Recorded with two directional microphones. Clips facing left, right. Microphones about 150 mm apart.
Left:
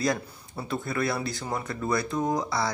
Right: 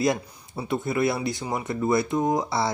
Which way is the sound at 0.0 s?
20° right (ahead or behind).